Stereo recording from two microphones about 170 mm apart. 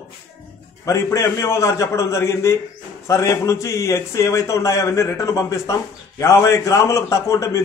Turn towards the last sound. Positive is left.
turn(degrees=20)  # may be behind; listen again after turning